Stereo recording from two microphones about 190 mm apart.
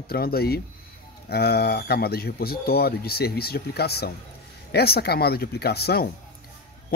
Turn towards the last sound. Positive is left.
turn(degrees=55)  # may be behind; listen again after turning